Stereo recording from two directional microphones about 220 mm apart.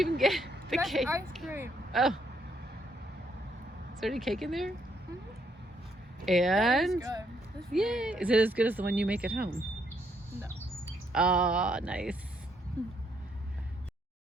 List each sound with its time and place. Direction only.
0.2 s speech: centre (ahead or behind)
4.0 s speech: centre (ahead or behind)
6.2 s speech: centre (ahead or behind)
7.0 s speech: 15° right (ahead or behind)
7.7 s speech: centre (ahead or behind)
11.1 s speech: 5° right (ahead or behind)